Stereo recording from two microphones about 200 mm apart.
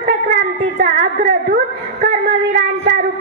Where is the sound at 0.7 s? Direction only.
45° right (ahead or behind).